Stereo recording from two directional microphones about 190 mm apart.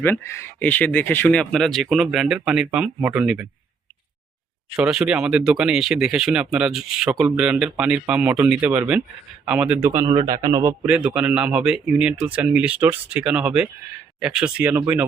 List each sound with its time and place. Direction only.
0.0 s speech: 15° left (ahead or behind); by 3.4 s 5° right (ahead or behind)
4.8 s a man's voice: 5° right (ahead or behind)
10.1 s a man's voice: 25° right (ahead or behind); by 15.0 s 5° right (ahead or behind)